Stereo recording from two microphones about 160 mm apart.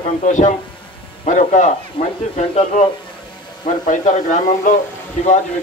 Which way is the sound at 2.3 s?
45° left (ahead or behind).